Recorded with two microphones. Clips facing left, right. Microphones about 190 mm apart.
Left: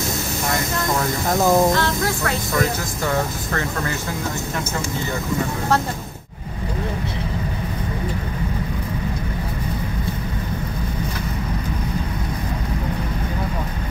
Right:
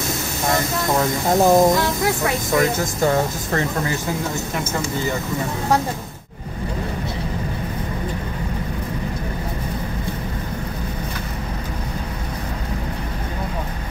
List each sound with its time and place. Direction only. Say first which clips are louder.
1.4 s speech: right 2 dB; 20° right (ahead or behind)